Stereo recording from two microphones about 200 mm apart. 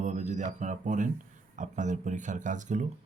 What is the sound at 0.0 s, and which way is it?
Speech, 35° right (ahead or behind).